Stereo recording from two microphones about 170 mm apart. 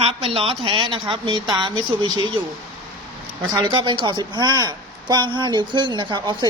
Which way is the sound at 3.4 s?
25° right (ahead or behind).